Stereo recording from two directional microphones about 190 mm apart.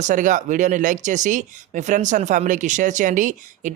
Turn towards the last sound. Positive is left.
turn(degrees=-40)  # may be behind; listen again after turning